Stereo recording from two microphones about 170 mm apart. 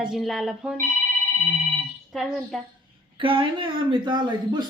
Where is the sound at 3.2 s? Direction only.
30° right (ahead or behind).